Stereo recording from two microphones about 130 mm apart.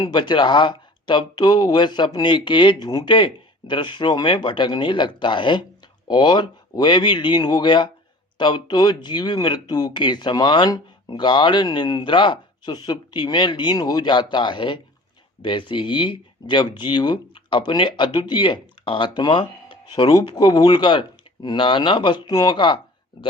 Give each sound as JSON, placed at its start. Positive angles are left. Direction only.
{"t": 0.0, "sound": "speech", "side_deg": 35}